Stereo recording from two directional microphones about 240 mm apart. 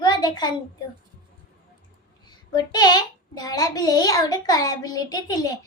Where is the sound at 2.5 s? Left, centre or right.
Centre.